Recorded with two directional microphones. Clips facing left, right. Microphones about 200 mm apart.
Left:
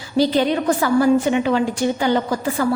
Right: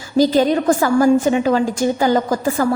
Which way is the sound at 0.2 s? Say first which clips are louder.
Right 3 dB; 45° right (ahead or behind).